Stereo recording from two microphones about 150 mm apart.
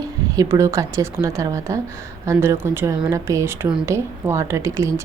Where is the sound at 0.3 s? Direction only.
20° right (ahead or behind).